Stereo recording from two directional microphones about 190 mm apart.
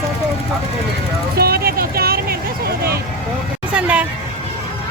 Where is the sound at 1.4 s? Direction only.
55° right (ahead or behind).